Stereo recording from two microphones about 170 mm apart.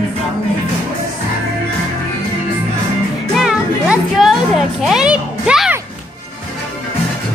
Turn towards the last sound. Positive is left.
turn(degrees=-5)  # may be behind; listen again after turning